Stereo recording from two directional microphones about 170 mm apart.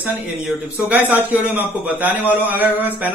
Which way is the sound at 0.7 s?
10° right (ahead or behind).